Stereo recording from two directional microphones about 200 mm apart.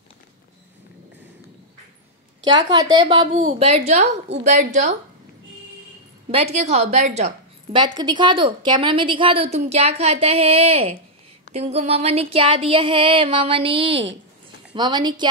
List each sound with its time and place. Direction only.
2.5 s a woman's voice: 20° right (ahead or behind); by 4.9 s 40° right (ahead or behind)
6.3 s a woman's voice: 30° right (ahead or behind)